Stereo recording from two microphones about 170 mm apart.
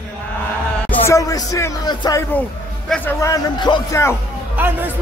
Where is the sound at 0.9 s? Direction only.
15° left (ahead or behind).